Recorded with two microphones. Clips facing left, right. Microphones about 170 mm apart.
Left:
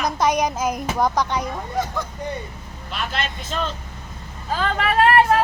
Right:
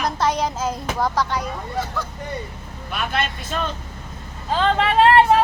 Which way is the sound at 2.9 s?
55° right (ahead or behind).